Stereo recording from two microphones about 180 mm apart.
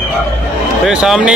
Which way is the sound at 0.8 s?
Centre (ahead or behind).